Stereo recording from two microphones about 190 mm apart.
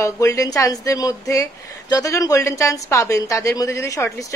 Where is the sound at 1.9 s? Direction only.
20° left (ahead or behind).